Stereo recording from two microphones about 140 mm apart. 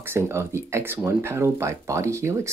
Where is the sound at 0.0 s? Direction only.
20° right (ahead or behind).